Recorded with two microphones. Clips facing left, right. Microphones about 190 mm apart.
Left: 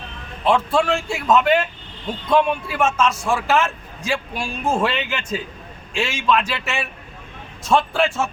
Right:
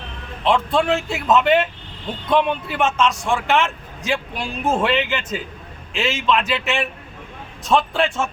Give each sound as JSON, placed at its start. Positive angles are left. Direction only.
{"t": 0.4, "sound": "a man's voice", "side_deg": 0}